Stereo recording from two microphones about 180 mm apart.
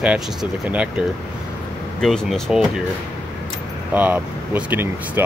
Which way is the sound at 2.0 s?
5° left (ahead or behind).